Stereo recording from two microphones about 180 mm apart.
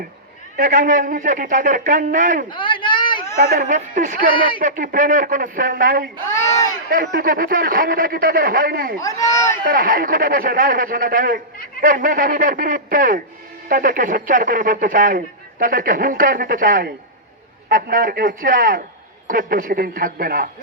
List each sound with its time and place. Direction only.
0.5 s speech: 50° right (ahead or behind)
2.5 s a sound: 25° left (ahead or behind)
3.3 s speech: 50° right (ahead or behind)
9.0 s speech: 20° left (ahead or behind)
9.6 s speech: 50° right (ahead or behind)